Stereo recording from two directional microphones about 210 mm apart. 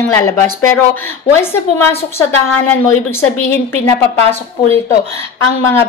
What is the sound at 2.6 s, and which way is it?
Speech, 10° left (ahead or behind).